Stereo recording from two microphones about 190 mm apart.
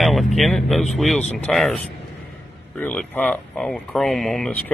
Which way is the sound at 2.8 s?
5° left (ahead or behind).